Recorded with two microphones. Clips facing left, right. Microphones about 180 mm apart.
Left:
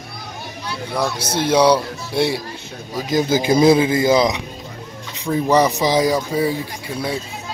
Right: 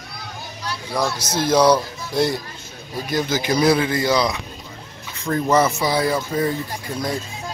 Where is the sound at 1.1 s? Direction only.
60° left (ahead or behind).